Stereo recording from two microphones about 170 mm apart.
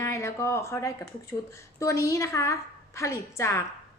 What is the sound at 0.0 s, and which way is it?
A woman's voice, 15° left (ahead or behind).